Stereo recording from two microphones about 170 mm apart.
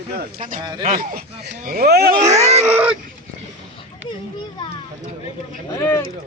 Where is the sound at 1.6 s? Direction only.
65° right (ahead or behind).